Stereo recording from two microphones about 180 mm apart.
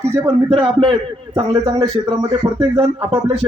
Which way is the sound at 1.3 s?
20° right (ahead or behind).